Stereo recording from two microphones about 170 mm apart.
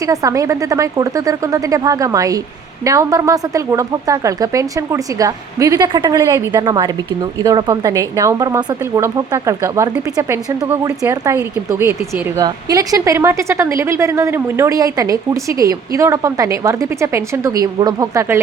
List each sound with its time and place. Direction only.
0.0 s a woman's voice: 20° right (ahead or behind)